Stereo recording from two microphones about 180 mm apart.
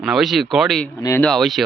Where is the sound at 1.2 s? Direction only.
Centre (ahead or behind).